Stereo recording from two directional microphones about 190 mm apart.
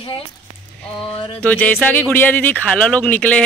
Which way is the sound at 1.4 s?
10° left (ahead or behind).